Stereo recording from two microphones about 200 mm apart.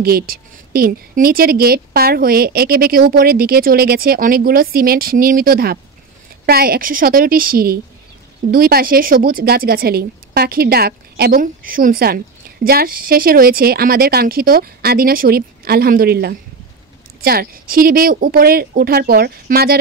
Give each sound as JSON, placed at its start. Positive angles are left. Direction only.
{"t": 0.0, "sound": "a woman's voice", "side_deg": -50}